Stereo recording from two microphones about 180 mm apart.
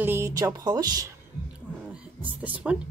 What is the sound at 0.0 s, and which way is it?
Speech, 15° right (ahead or behind).